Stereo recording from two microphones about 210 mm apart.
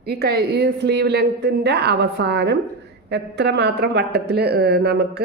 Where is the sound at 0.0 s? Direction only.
50° right (ahead or behind).